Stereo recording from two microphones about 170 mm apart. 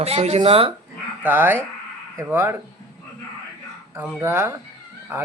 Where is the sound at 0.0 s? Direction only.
35° right (ahead or behind).